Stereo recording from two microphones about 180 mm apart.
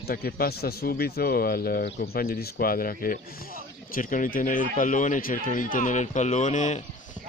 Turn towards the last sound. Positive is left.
turn(degrees=45)  # may be behind; listen again after turning